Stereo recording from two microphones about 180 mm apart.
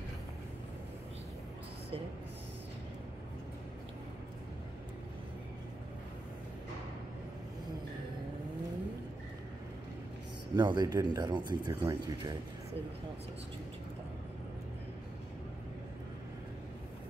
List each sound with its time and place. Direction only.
10.5 s speech: 25° right (ahead or behind)